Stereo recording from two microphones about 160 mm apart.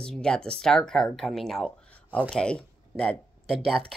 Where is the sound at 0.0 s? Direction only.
5° left (ahead or behind).